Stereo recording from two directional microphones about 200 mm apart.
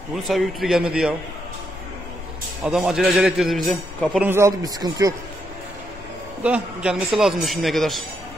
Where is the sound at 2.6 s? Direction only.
Centre (ahead or behind); by 5.1 s 20° right (ahead or behind).